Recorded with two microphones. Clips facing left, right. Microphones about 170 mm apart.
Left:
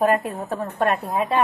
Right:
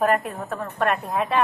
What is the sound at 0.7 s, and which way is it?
Speech, 35° left (ahead or behind).